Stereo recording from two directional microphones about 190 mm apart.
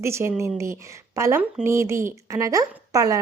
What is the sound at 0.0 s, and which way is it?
A woman's voice, 15° right (ahead or behind).